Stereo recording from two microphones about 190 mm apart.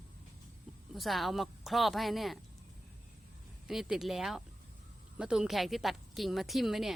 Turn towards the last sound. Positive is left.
turn(degrees=0)  # may be behind; listen again after turning